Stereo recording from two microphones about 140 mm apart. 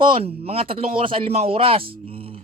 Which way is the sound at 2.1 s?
40° right (ahead or behind).